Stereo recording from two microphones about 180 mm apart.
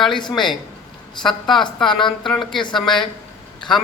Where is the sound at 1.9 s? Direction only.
25° left (ahead or behind).